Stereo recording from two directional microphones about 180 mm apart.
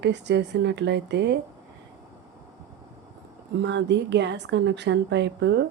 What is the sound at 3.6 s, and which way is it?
A woman's voice, 80° right.